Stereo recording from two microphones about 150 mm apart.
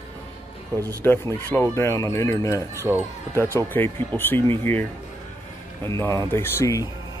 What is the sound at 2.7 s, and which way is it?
Speech, 15° right (ahead or behind).